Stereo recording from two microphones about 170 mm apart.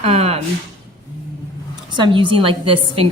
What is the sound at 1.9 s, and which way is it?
A woman's voice, 30° right (ahead or behind).